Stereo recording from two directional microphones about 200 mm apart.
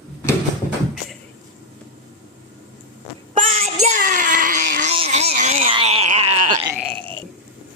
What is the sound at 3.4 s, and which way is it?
Child singing, 30° right (ahead or behind).